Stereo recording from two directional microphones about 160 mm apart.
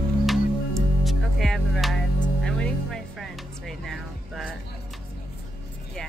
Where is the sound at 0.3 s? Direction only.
Centre (ahead or behind).